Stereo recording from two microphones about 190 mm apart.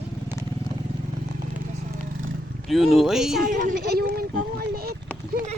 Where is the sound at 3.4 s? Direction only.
45° right (ahead or behind).